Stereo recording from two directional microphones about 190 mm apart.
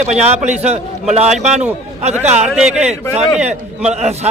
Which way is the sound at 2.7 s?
35° right (ahead or behind).